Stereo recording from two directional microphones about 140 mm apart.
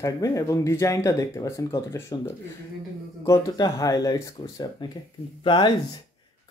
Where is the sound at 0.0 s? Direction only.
25° left (ahead or behind).